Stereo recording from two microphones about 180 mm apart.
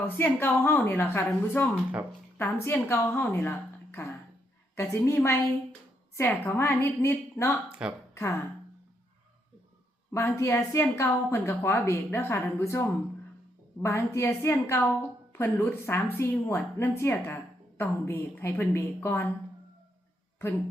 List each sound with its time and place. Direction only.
0.0 s a woman's voice: 10° left (ahead or behind)
7.7 s a woman's voice: 5° right (ahead or behind)
8.1 s speech: 15° left (ahead or behind)
10.1 s a woman's voice: 15° left (ahead or behind)
13.8 s a woman's voice: 15° left (ahead or behind)